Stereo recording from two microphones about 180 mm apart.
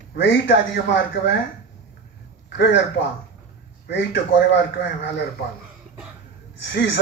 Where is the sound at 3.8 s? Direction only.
90° left.